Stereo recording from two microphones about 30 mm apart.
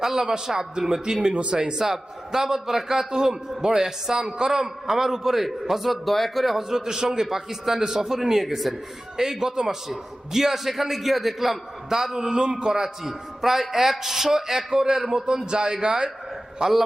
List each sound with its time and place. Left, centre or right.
0.2 s a man's voice: centre
6.6 s a man's voice: centre
8.4 s a man's voice: centre
9.1 s a man's voice: centre
12.2 s a man's voice: right
12.7 s a man's voice: centre